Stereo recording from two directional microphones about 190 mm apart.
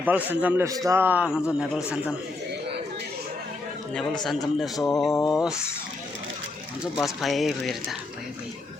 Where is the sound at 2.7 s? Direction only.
60° right (ahead or behind).